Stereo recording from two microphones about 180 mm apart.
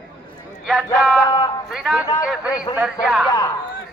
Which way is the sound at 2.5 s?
20° left (ahead or behind).